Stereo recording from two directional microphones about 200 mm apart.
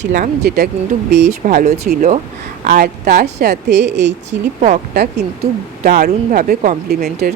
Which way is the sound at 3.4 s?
55° right (ahead or behind).